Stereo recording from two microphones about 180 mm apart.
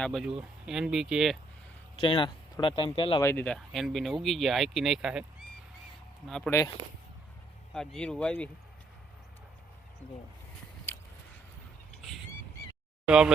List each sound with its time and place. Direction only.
0.0 s speech: centre (ahead or behind)
2.0 s speech: 30° left (ahead or behind)
3.2 s speech: 10° left (ahead or behind)
6.2 s speech: 5° left (ahead or behind)
7.7 s speech: 5° left (ahead or behind)
13.1 s speech: 5° right (ahead or behind)